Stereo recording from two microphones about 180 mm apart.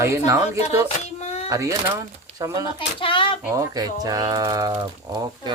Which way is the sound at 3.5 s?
20° right (ahead or behind).